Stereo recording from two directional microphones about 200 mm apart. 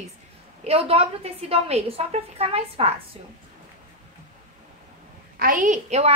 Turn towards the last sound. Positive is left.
turn(degrees=-35)  # may be behind; listen again after turning